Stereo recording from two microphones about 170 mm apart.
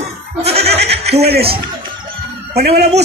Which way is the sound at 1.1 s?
70° right (ahead or behind).